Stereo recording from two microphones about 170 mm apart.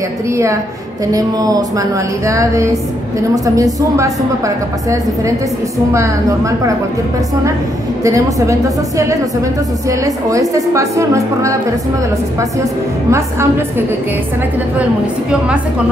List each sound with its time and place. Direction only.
0.3 s a woman's voice: 15° right (ahead or behind)
5.9 s a woman's voice: 15° right (ahead or behind)
8.0 s speech: 20° right (ahead or behind)
13.1 s a woman's voice: 15° right (ahead or behind)